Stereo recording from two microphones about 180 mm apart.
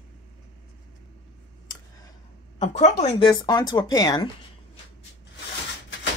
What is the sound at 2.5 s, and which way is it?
Speech, 40° left (ahead or behind).